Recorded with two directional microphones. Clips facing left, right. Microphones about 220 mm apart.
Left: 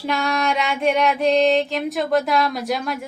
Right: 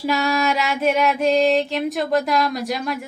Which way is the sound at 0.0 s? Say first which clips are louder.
Right 2 dB; 5° right (ahead or behind).